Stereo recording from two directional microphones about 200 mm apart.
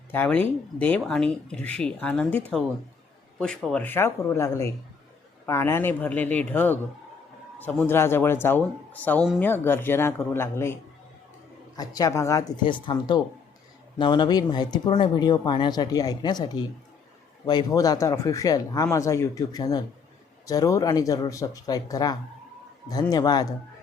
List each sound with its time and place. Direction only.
0.1 s speech: 10° left (ahead or behind)
3.4 s speech: 5° left (ahead or behind)
11.8 s speech: 15° left (ahead or behind)